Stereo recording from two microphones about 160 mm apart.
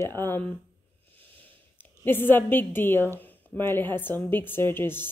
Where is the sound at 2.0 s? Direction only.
15° left (ahead or behind).